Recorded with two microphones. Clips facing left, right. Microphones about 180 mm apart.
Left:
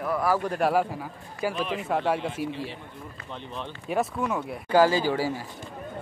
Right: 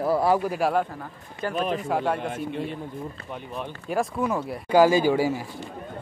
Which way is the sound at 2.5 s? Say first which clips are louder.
Right 3 dB; 55° right (ahead or behind).